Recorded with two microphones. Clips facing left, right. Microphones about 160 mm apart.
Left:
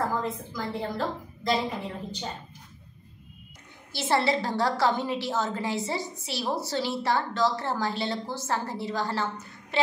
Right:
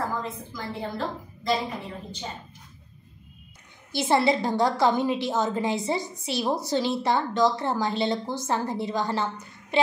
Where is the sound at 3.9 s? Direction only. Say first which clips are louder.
Right 3 dB; 15° right (ahead or behind).